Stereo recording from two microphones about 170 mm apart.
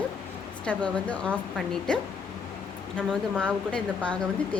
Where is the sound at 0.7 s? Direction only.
10° left (ahead or behind).